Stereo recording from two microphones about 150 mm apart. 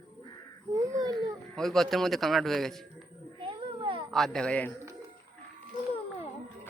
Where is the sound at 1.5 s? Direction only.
Centre (ahead or behind).